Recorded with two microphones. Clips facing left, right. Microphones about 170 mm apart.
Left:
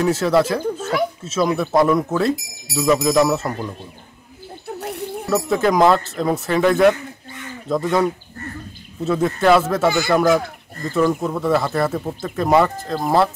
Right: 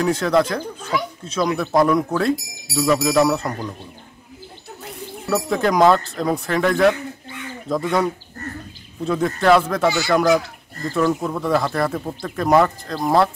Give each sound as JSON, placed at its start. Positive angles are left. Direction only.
{"t": 0.0, "sound": "speech", "side_deg": 5}
{"t": 0.7, "sound": "children playing", "side_deg": 45}
{"t": 1.2, "sound": "speech", "side_deg": 5}
{"t": 5.3, "sound": "speech", "side_deg": 0}
{"t": 9.8, "sound": "speech", "side_deg": 50}
{"t": 11.1, "sound": "speech", "side_deg": 0}